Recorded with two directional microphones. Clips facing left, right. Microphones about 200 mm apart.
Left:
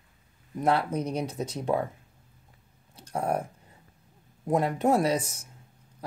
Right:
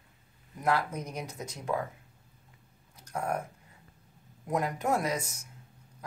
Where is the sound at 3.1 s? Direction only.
30° left (ahead or behind).